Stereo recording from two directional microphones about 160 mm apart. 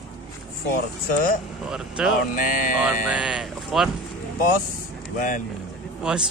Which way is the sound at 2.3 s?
55° left (ahead or behind).